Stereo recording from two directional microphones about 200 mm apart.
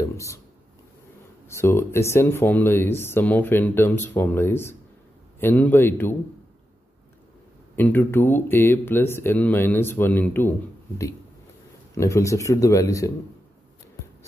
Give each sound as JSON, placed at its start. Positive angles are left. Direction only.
{"t": 0.0, "sound": "speech", "side_deg": 15}
{"t": 1.5, "sound": "speech", "side_deg": 10}
{"t": 7.7, "sound": "speech", "side_deg": 10}
{"t": 11.9, "sound": "speech", "side_deg": 15}